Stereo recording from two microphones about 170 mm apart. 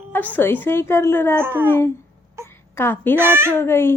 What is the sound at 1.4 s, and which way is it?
Speech, 15° right (ahead or behind).